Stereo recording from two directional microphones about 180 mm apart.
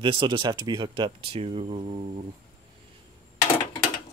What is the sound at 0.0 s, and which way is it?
Speech, 25° right (ahead or behind).